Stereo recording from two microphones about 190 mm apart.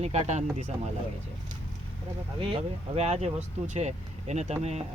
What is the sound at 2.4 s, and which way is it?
Speech, 30° right (ahead or behind).